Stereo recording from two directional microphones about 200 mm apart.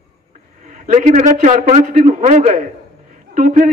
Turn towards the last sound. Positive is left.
turn(degrees=-40)  # may be behind; listen again after turning